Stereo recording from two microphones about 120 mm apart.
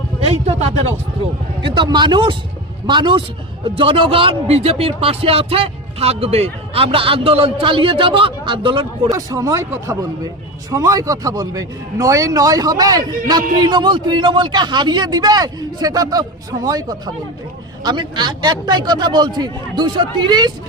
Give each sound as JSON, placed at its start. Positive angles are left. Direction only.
{"t": 0.3, "sound": "speech", "side_deg": -60}
{"t": 1.6, "sound": "a man's voice", "side_deg": -40}
{"t": 9.0, "sound": "a man's voice", "side_deg": -30}